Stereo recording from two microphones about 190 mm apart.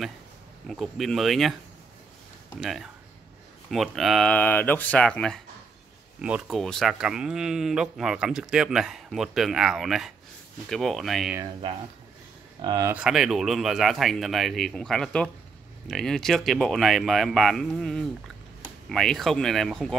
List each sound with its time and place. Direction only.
0.7 s speech: centre (ahead or behind)
12.6 s speech: 20° right (ahead or behind)
12.9 s speech: 5° right (ahead or behind)